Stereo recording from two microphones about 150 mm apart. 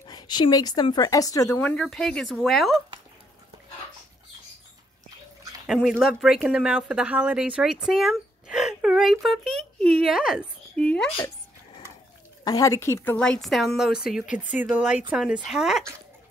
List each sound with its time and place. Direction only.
0.0 s a woman's voice: 30° left (ahead or behind)
1.6 s speech: 5° left (ahead or behind)
5.7 s speech: centre (ahead or behind)
12.4 s speech: 25° left (ahead or behind); by 15.8 s 5° right (ahead or behind)